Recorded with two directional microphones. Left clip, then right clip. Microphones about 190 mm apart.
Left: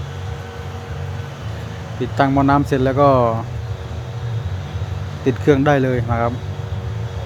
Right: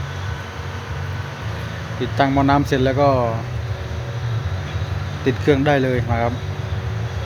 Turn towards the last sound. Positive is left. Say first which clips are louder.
# left 1 dB
turn(degrees=10)  # may be behind; listen again after turning